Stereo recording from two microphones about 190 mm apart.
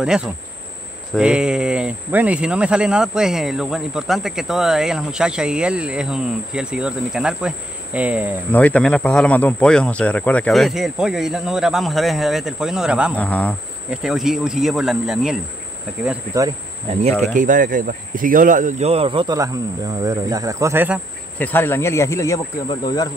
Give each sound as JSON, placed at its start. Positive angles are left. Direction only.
{"t": 0.0, "sound": "speech", "side_deg": -5}
{"t": 8.5, "sound": "speech", "side_deg": 10}
{"t": 13.1, "sound": "speech", "side_deg": 5}
{"t": 17.3, "sound": "speech", "side_deg": -40}
{"t": 21.4, "sound": "speech", "side_deg": 10}